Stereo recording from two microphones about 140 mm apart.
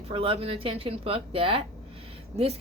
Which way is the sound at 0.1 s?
45° right (ahead or behind).